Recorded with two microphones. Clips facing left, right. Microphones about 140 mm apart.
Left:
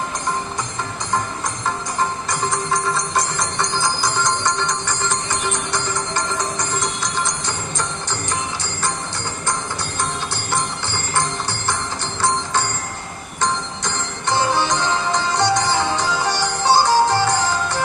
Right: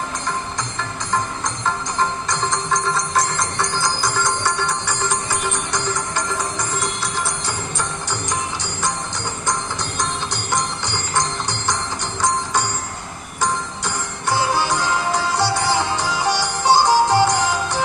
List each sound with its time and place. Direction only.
2.5 s music: 5° left (ahead or behind)
7.0 s music: 5° right (ahead or behind)
10.5 s music: 15° right (ahead or behind)
13.4 s music: 10° right (ahead or behind)